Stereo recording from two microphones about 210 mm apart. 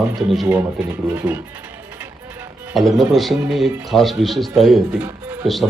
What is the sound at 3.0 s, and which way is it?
Speech, centre (ahead or behind).